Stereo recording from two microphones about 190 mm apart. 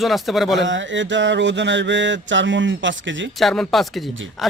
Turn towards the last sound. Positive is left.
turn(degrees=0)  # may be behind; listen again after turning